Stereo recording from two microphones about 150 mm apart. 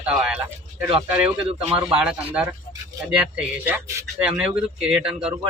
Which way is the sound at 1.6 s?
40° right (ahead or behind).